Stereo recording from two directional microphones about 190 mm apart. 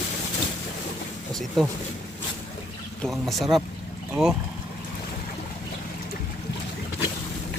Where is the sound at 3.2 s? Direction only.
Centre (ahead or behind).